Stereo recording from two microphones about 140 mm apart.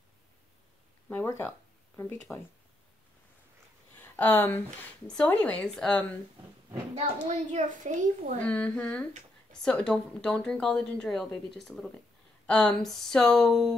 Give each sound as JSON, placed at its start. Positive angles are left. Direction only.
{"t": 1.0, "sound": "speech", "side_deg": 15}
{"t": 4.0, "sound": "a woman's voice", "side_deg": 10}
{"t": 7.0, "sound": "a child's voice", "side_deg": -55}
{"t": 8.5, "sound": "speech", "side_deg": 10}